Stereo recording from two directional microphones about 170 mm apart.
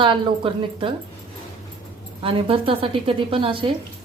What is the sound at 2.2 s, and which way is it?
A woman's voice, 30° right (ahead or behind).